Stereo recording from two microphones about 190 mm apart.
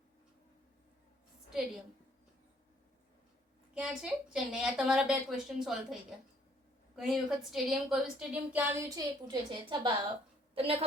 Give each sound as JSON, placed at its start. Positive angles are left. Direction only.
{"t": 3.8, "sound": "a woman's voice", "side_deg": -5}